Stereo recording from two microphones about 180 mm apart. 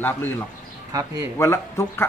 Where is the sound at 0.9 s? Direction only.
20° right (ahead or behind).